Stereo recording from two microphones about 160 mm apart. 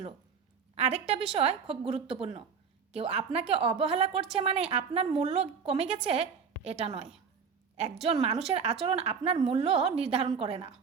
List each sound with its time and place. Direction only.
0.8 s a woman's voice: 40° right (ahead or behind)